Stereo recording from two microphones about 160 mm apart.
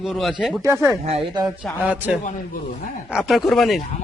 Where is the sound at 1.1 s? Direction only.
30° right (ahead or behind).